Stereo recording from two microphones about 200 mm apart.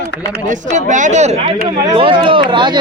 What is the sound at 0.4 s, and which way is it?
Speech, 40° right (ahead or behind).